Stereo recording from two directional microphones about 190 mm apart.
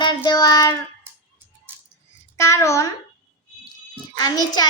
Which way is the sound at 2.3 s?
15° left (ahead or behind).